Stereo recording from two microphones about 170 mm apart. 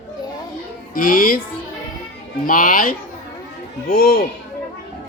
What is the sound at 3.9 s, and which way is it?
Speech, 65° left (ahead or behind).